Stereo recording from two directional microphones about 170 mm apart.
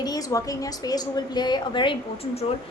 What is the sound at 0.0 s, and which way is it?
A woman's voice, 20° left (ahead or behind).